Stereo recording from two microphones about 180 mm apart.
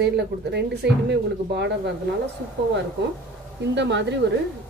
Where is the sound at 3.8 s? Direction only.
75° right (ahead or behind).